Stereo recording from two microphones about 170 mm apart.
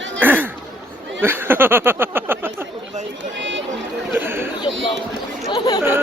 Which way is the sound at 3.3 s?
90° right.